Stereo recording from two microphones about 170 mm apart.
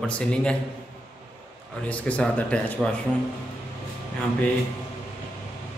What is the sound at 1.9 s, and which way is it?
Speech, 5° left (ahead or behind).